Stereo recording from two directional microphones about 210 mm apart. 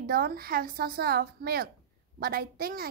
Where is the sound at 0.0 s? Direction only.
45° right (ahead or behind).